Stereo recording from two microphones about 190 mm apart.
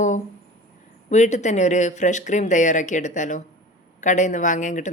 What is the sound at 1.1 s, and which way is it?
Speech, 40° left (ahead or behind).